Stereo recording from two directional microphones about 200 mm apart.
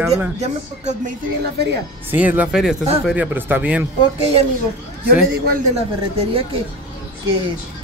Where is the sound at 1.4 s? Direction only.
55° right (ahead or behind).